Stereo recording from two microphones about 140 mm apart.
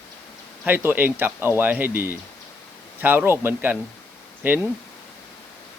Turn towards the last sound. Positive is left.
turn(degrees=-15)  # may be behind; listen again after turning